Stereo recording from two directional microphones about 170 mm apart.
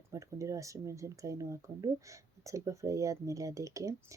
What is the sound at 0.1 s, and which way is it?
Speech, 20° right (ahead or behind).